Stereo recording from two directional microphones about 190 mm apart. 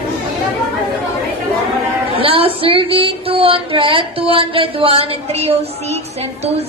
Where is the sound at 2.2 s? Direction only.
30° right (ahead or behind).